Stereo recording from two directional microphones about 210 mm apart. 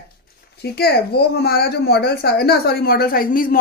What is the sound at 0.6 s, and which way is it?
A woman's voice, 50° left (ahead or behind).